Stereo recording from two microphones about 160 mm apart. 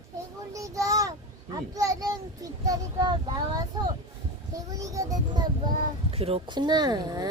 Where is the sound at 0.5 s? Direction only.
20° right (ahead or behind).